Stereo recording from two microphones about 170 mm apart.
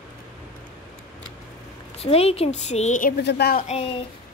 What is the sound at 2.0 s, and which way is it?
A woman's voice, 35° left (ahead or behind).